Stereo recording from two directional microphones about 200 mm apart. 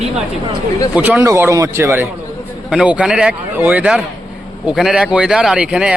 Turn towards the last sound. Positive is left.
turn(degrees=-5)  # may be behind; listen again after turning